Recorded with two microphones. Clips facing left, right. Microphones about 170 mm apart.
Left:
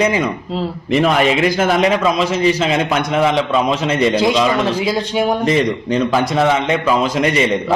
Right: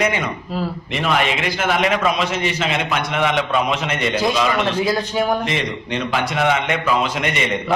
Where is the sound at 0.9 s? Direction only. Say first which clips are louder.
Left 7 dB; 40° left (ahead or behind).